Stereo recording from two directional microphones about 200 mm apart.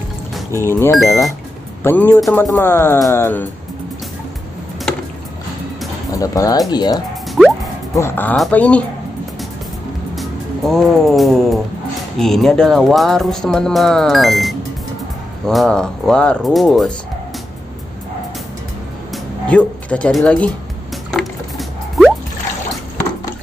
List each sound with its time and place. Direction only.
0.5 s speech: 15° left (ahead or behind)
6.1 s speech: 15° left (ahead or behind)
10.1 s music: centre (ahead or behind)
12.2 s speech: centre (ahead or behind)
19.1 s music: 5° left (ahead or behind)